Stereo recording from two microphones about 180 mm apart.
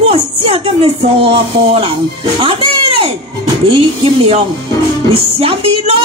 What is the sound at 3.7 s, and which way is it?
Speech, 30° right (ahead or behind).